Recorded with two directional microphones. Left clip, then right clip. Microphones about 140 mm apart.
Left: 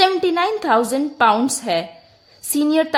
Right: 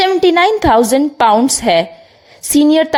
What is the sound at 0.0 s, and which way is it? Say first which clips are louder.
A woman's voice: right 6 dB; 40° right (ahead or behind).